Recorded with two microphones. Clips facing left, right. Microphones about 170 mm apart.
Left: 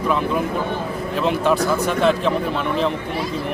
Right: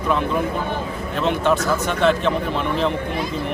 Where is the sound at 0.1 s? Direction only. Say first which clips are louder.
Right 1 dB; centre (ahead or behind).